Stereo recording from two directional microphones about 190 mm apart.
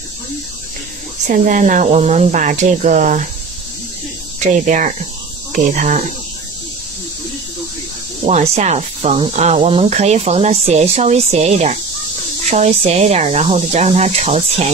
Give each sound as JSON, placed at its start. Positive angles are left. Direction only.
{"t": 1.2, "sound": "speech", "side_deg": -40}
{"t": 4.4, "sound": "speech", "side_deg": -40}
{"t": 8.3, "sound": "speech", "side_deg": -35}